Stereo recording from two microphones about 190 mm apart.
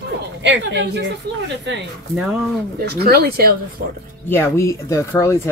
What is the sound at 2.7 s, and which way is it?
Speech, 55° right (ahead or behind).